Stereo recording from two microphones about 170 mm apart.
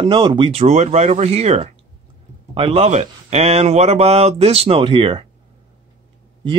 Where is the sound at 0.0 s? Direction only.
30° right (ahead or behind).